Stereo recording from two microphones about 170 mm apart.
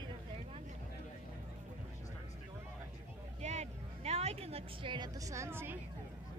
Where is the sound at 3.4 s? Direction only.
40° right (ahead or behind); by 5.8 s 15° right (ahead or behind).